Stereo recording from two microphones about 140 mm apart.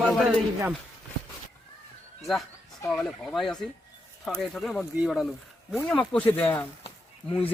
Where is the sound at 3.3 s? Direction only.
Centre (ahead or behind).